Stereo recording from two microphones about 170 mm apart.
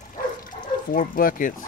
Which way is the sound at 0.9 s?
50° left (ahead or behind).